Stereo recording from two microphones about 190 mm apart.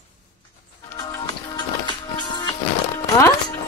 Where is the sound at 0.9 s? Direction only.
20° left (ahead or behind).